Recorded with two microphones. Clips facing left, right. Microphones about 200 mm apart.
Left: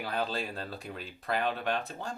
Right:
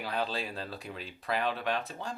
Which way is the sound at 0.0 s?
45° left (ahead or behind).